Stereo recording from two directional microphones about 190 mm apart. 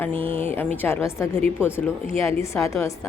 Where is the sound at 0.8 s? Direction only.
10° left (ahead or behind).